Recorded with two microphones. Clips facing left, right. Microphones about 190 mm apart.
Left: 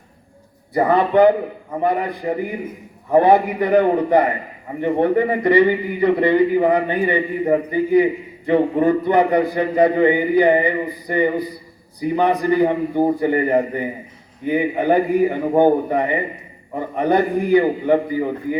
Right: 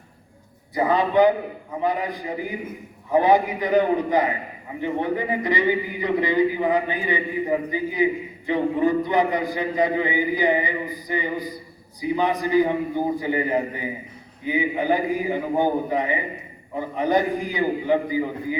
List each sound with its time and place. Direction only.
0.7 s a man's voice: 60° left (ahead or behind)